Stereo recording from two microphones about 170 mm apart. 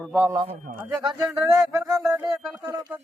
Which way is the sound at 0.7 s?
60° right (ahead or behind).